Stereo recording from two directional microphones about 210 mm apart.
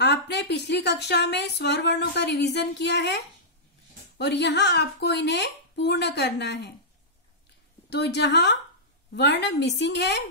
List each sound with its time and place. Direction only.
0.0 s a woman's voice: 55° left (ahead or behind)
4.2 s a woman's voice: 55° left (ahead or behind)
7.9 s a woman's voice: 55° left (ahead or behind)